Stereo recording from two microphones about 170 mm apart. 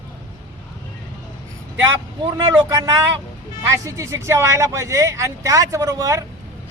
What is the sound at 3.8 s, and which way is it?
Speech, 20° right (ahead or behind).